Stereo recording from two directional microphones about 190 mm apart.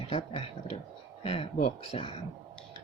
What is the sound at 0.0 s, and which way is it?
Speech, 30° left (ahead or behind).